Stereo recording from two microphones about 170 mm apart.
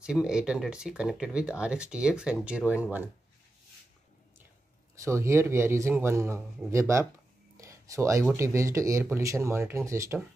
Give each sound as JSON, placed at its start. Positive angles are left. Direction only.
{"t": 0.0, "sound": "speech", "side_deg": -5}
{"t": 4.9, "sound": "speech", "side_deg": -15}
{"t": 7.5, "sound": "a sound", "side_deg": -20}
{"t": 8.4, "sound": "speech", "side_deg": -15}